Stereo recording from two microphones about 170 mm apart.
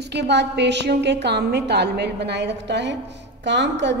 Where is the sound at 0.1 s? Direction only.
90° right.